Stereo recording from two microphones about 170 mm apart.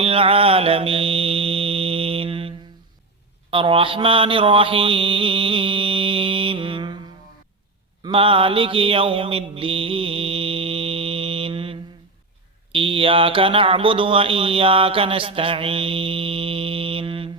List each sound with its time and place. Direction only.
0.0 s mantra: 35° right (ahead or behind)
8.0 s mantra: 30° right (ahead or behind)
12.7 s speech: 30° right (ahead or behind)